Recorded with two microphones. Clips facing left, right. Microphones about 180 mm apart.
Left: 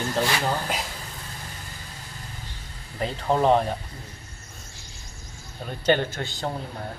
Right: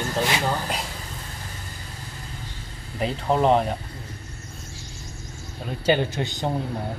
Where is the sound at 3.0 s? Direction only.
Centre (ahead or behind).